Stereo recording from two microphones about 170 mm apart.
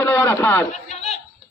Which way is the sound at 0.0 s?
15° left (ahead or behind).